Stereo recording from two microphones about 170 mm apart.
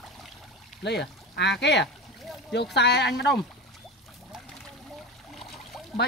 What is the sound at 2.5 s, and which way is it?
Speech, 80° left.